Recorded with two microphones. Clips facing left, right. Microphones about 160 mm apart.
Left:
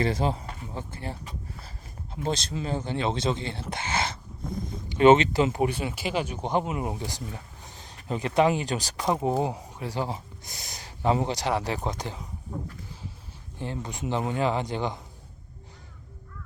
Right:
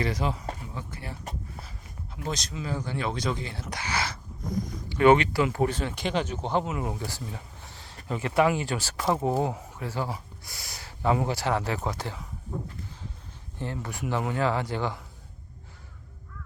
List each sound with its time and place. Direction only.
0.0 s speech: 30° left (ahead or behind)
2.2 s speech: 30° left (ahead or behind)
13.6 s speech: 20° left (ahead or behind)